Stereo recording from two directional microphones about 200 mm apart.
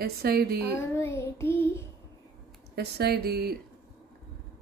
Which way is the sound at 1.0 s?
15° left (ahead or behind).